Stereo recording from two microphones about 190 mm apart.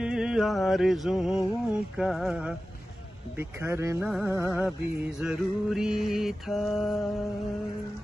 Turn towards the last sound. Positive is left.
turn(degrees=0)  # may be behind; listen again after turning